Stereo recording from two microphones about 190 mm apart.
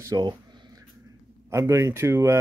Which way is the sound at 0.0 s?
20° right (ahead or behind).